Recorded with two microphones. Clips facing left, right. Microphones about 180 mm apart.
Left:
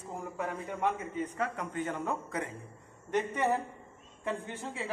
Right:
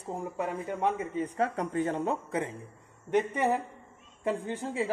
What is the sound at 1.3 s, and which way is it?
Speech, 35° right (ahead or behind).